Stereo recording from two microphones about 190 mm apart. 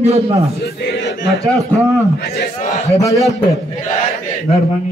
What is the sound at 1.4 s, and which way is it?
Speech, 15° right (ahead or behind).